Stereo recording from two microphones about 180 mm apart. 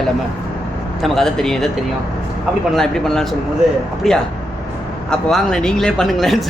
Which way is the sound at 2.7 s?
5° left (ahead or behind).